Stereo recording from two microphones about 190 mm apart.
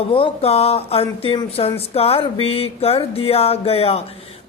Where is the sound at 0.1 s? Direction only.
30° left (ahead or behind).